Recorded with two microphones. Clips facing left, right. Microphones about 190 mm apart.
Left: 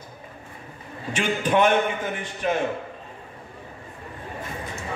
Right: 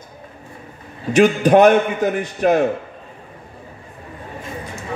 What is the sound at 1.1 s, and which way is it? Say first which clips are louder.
A man's voice: right 10 dB; 40° right (ahead or behind).